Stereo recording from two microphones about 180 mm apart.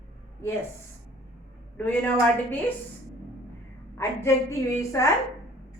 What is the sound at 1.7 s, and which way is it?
Speech, 10° left (ahead or behind).